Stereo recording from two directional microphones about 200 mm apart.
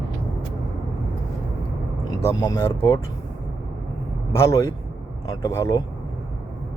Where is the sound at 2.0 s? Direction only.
15° left (ahead or behind).